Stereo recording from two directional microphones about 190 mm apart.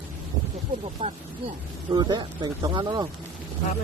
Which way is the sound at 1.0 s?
30° right (ahead or behind).